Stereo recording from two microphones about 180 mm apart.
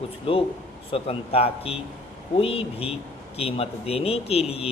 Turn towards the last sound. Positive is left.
turn(degrees=35)  # may be behind; listen again after turning